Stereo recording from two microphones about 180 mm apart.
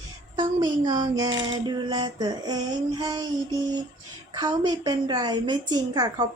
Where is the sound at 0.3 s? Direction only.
25° right (ahead or behind).